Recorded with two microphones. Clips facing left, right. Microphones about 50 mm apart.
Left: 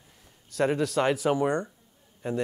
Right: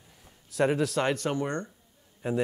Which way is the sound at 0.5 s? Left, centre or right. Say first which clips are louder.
Even; centre.